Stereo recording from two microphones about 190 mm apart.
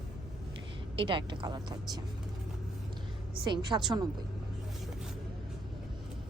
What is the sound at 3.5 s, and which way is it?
Speech, 25° right (ahead or behind).